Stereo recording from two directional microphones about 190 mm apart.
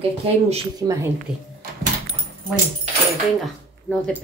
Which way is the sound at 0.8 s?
20° right (ahead or behind).